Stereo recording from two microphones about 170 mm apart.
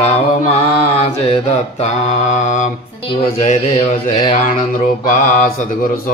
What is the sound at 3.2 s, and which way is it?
Speech, 35° left (ahead or behind).